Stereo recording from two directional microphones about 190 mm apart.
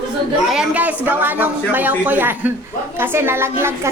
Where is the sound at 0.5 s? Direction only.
5° right (ahead or behind).